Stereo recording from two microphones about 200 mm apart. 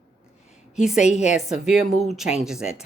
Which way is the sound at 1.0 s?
35° left (ahead or behind).